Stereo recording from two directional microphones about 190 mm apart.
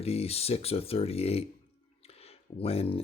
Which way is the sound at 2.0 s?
30° left (ahead or behind).